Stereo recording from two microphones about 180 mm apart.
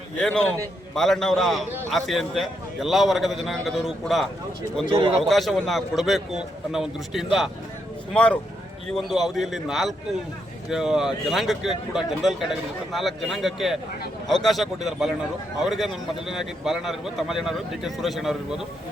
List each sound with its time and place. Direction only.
0.2 s speech: 5° left (ahead or behind)
4.9 s a man's voice: 30° right (ahead or behind)
5.3 s speech: centre (ahead or behind)